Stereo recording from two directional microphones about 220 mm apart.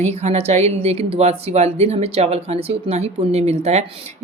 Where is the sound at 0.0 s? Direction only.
30° right (ahead or behind).